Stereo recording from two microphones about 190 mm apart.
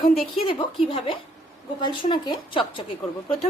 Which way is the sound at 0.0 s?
25° left (ahead or behind).